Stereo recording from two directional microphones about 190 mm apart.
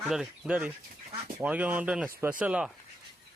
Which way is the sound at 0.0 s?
Centre (ahead or behind).